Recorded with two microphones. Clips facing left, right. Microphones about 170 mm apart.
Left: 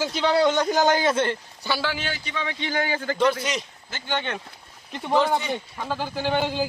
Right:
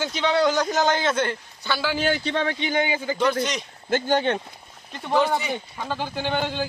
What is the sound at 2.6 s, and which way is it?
Speech, 20° right (ahead or behind).